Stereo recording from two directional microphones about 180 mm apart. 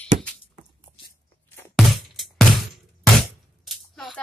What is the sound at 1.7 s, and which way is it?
Music, centre (ahead or behind).